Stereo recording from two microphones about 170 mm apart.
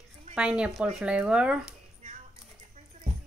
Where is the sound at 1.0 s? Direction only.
5° right (ahead or behind).